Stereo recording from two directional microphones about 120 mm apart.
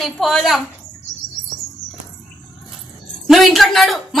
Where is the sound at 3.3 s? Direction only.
Centre (ahead or behind).